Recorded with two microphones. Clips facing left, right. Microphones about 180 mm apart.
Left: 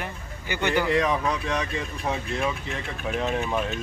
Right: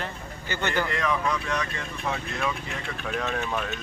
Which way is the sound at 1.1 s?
30° left (ahead or behind).